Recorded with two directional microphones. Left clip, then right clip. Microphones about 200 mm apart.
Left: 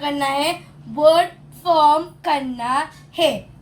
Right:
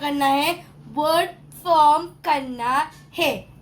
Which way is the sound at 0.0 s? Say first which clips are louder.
Even; 30° right (ahead or behind).